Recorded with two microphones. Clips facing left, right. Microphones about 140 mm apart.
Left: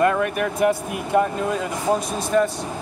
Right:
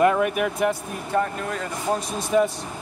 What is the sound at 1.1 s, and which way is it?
Speech, 20° left (ahead or behind).